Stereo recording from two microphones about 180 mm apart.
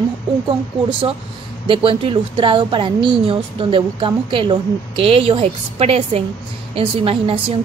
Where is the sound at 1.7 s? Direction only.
30° right (ahead or behind).